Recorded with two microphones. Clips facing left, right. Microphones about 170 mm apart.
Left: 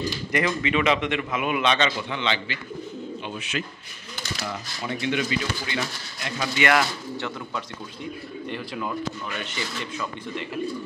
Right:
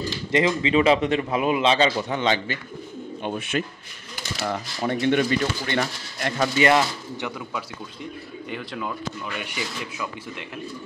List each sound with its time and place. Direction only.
0.3 s a man's voice: 25° right (ahead or behind); by 6.5 s 50° right (ahead or behind)
6.6 s speech: 25° right (ahead or behind)
8.5 s speech: centre (ahead or behind)
9.4 s speech: 10° right (ahead or behind)